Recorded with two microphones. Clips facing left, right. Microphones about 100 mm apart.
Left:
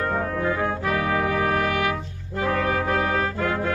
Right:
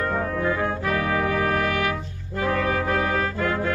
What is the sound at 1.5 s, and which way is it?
Music, 15° left (ahead or behind).